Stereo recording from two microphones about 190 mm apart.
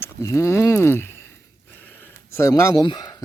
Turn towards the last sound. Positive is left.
turn(degrees=20)  # may be behind; listen again after turning